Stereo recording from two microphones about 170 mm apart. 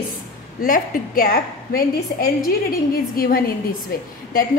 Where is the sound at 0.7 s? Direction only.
55° left (ahead or behind).